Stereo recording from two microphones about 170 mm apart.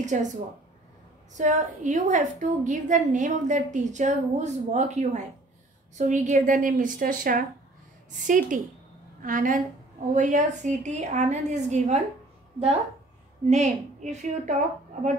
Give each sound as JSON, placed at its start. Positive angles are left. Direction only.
{"t": 0.0, "sound": "a woman's voice", "side_deg": -45}
{"t": 13.5, "sound": "a woman's voice", "side_deg": -45}